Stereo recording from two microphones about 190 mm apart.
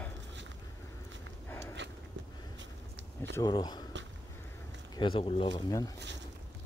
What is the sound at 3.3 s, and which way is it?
Speech, 20° left (ahead or behind).